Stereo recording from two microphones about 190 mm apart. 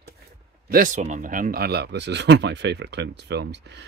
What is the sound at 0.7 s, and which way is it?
Speech, 45° right (ahead or behind).